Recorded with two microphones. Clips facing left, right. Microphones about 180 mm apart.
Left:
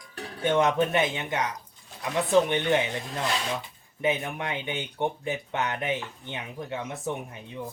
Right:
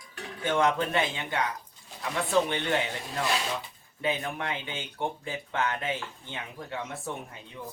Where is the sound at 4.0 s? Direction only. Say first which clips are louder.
Left 3 dB; 20° left (ahead or behind).